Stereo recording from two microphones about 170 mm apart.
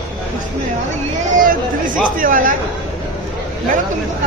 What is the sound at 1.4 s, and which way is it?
Speech, 55° right (ahead or behind).